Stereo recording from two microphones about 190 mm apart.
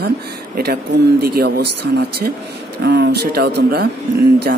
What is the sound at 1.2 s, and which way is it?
A man's voice, 55° right (ahead or behind).